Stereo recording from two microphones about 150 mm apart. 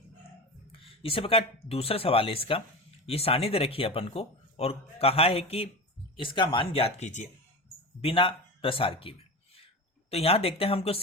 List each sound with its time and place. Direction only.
0.7 s a sound: 40° left (ahead or behind)
1.6 s speech: 40° left (ahead or behind)
8.0 s speech: 35° left (ahead or behind)